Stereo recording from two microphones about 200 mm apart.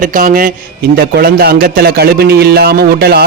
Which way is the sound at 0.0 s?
40° right (ahead or behind).